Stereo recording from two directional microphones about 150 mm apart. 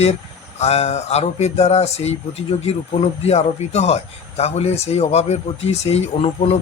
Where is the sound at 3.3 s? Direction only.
45° left (ahead or behind).